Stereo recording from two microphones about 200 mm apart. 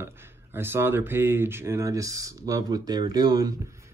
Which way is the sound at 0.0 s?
10° right (ahead or behind).